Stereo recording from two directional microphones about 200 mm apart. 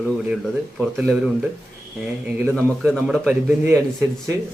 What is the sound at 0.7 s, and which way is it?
Speech, 10° right (ahead or behind).